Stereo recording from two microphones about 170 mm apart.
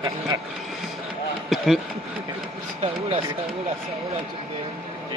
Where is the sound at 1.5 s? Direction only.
Centre (ahead or behind).